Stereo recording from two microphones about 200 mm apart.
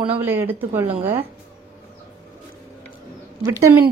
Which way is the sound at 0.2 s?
10° right (ahead or behind).